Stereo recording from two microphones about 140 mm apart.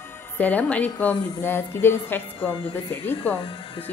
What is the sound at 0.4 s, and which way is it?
A woman's voice, 10° left (ahead or behind).